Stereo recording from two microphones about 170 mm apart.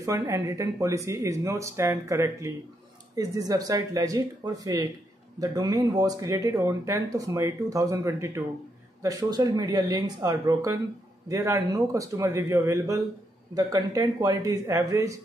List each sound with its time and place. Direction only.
0.0 s speech: 20° right (ahead or behind)